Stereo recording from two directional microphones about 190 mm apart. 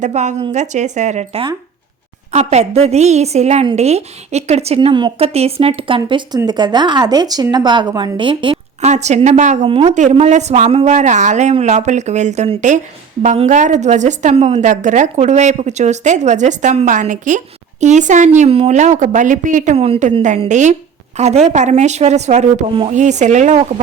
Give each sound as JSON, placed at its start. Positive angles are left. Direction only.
{"t": 0.0, "sound": "a woman's voice", "side_deg": -40}
{"t": 8.9, "sound": "a woman's voice", "side_deg": -35}